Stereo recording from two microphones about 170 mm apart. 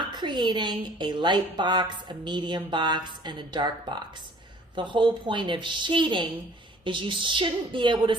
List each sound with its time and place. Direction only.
0.1 s a woman's voice: 25° right (ahead or behind)